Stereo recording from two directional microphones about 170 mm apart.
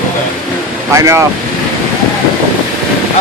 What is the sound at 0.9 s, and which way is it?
Speech, 15° right (ahead or behind).